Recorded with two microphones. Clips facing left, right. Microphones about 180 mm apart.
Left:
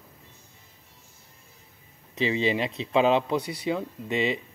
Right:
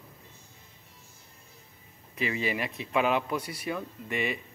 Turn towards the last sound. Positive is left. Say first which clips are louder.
# left 5 dB
turn(degrees=20)  # may be behind; listen again after turning